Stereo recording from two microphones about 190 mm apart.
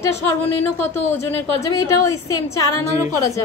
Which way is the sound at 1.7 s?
15° left (ahead or behind).